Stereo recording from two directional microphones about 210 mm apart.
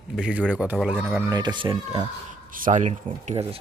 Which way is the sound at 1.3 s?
20° right (ahead or behind).